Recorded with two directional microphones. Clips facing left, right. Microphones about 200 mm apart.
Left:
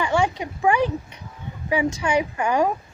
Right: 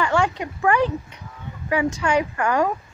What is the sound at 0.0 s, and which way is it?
Speech, 15° left (ahead or behind).